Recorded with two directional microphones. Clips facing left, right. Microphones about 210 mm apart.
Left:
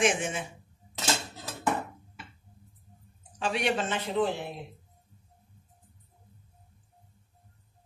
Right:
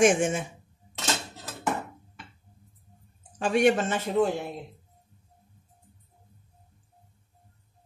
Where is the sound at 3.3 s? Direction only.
45° right (ahead or behind).